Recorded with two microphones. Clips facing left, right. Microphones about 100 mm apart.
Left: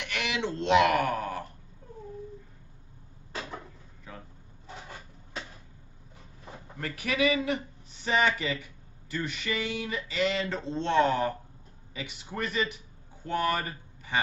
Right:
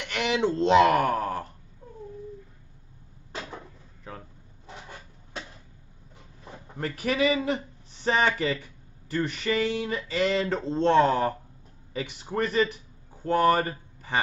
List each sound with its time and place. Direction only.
0.1 s a sound: 35° right (ahead or behind)
0.7 s speech: 35° right (ahead or behind)
6.8 s speech: 35° right (ahead or behind)